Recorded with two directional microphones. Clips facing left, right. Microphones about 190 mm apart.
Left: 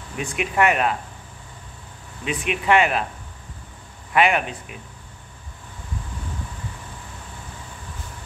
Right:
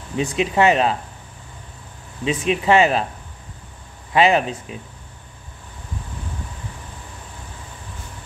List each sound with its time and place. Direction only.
0.1 s speech: 25° right (ahead or behind)
2.2 s speech: 30° right (ahead or behind)
4.1 s speech: 25° right (ahead or behind)